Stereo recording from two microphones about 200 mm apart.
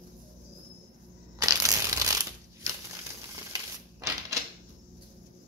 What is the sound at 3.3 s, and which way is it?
Typewriter, 15° right (ahead or behind).